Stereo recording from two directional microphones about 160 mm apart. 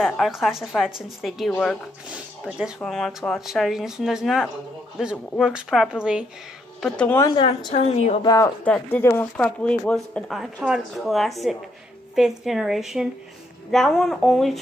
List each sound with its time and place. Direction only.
0.0 s speech: centre (ahead or behind)
2.0 s speech: 5° right (ahead or behind)
6.8 s speech: 5° left (ahead or behind)
7.3 s a woman's voice: 30° left (ahead or behind)
7.7 s speech: 45° left (ahead or behind)
8.2 s speech: 25° left (ahead or behind)
8.6 s speech: 10° left (ahead or behind)